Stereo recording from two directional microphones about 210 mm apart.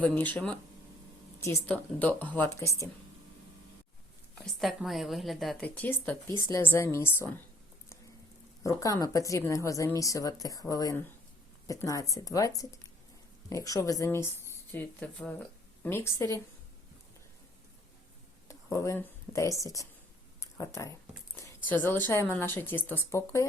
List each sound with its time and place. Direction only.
0.0 s speech: 10° left (ahead or behind)
4.6 s a woman's voice: centre (ahead or behind)
8.6 s speech: 15° left (ahead or behind)
18.4 s speech: 15° left (ahead or behind)
20.4 s a sound: 15° left (ahead or behind)
21.3 s speech: 10° left (ahead or behind)